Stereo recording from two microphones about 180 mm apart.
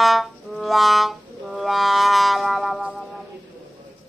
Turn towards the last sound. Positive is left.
turn(degrees=0)  # may be behind; listen again after turning